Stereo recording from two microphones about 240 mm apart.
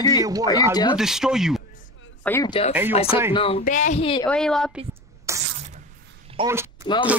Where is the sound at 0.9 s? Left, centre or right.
Centre.